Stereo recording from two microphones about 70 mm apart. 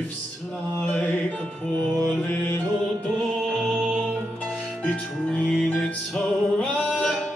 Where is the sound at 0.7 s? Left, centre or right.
Centre.